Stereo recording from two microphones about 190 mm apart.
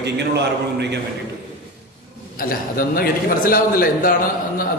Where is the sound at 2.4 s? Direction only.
50° left (ahead or behind).